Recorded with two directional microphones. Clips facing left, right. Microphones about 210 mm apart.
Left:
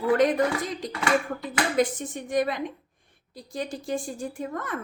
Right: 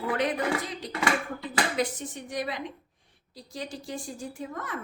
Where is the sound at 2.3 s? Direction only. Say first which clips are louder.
Left 8 dB; 50° left (ahead or behind).